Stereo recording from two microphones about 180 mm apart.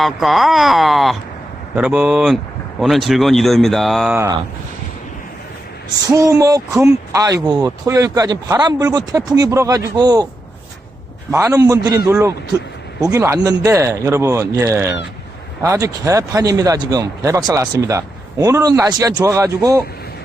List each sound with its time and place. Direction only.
0.0 s speech: centre (ahead or behind)
6.1 s a man's voice: 15° right (ahead or behind)
11.3 s a man's voice: 15° right (ahead or behind)